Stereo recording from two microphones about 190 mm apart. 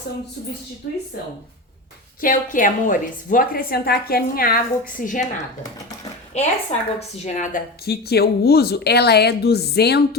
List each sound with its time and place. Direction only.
2.2 s a woman's voice: 45° left (ahead or behind)
6.3 s a woman's voice: 35° left (ahead or behind); by 10.2 s 60° left (ahead or behind)